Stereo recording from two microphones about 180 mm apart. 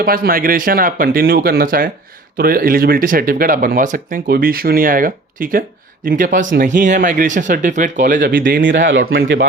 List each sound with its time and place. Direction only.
0.0 s speech: 55° right (ahead or behind)
8.7 s speech: 90° right